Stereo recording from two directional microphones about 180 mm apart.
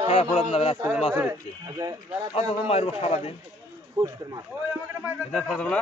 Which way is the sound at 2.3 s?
35° left (ahead or behind).